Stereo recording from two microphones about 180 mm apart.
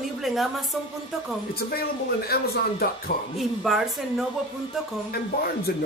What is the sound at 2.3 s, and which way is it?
Speech, 60° left (ahead or behind).